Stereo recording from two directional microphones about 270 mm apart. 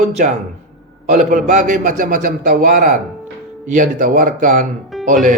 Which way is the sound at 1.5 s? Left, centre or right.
Right.